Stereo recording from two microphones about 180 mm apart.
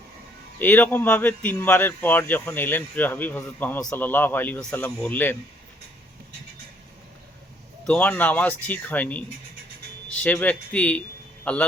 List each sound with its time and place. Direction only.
0.6 s speech: 10° left (ahead or behind)
7.9 s speech: 10° left (ahead or behind)
10.2 s a man's voice: 10° left (ahead or behind)